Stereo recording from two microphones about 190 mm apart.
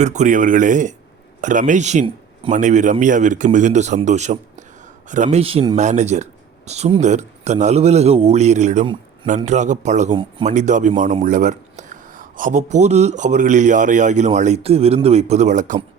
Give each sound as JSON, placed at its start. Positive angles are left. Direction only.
{"t": 0.0, "sound": "speech", "side_deg": -40}